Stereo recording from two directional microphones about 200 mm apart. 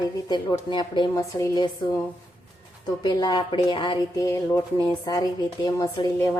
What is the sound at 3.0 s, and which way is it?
Speech, 20° left (ahead or behind).